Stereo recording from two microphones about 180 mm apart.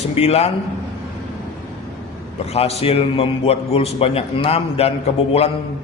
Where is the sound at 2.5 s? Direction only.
35° left (ahead or behind).